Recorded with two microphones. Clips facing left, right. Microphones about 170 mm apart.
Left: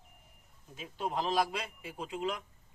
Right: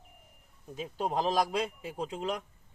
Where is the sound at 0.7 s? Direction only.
40° right (ahead or behind).